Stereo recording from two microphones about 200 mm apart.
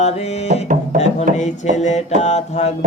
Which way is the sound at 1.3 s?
40° right (ahead or behind).